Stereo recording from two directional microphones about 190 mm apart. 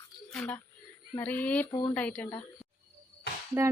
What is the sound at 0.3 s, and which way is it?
Speech, 5° left (ahead or behind).